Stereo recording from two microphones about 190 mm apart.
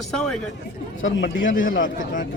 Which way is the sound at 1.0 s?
80° left.